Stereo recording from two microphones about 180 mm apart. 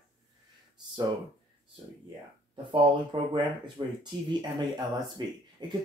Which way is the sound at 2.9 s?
25° right (ahead or behind).